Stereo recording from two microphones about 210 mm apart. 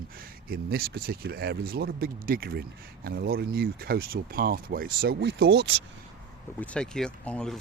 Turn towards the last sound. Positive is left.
turn(degrees=5)  # may be behind; listen again after turning